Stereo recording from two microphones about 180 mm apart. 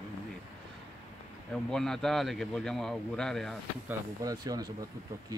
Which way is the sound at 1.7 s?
5° left (ahead or behind).